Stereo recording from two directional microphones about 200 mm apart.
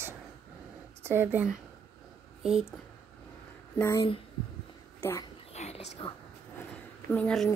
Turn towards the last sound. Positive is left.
turn(degrees=5)  # may be behind; listen again after turning